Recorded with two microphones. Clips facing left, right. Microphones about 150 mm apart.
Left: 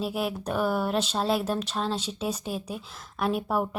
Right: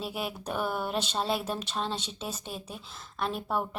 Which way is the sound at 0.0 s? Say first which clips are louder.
Left 6 dB; centre (ahead or behind).